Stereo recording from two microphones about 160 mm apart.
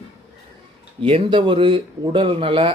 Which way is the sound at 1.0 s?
35° right (ahead or behind).